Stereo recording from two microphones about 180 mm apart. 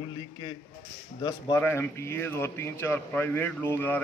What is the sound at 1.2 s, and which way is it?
Speech, 25° left (ahead or behind).